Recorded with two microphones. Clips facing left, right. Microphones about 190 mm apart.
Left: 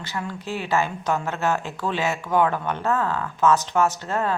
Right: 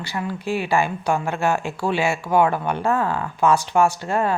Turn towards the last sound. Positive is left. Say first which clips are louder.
# right 3 dB
turn(degrees=-15)  # may be behind; listen again after turning